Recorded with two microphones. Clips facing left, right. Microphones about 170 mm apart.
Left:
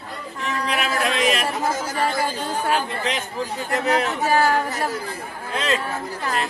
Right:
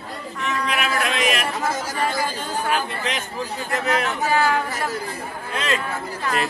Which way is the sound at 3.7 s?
35° left (ahead or behind).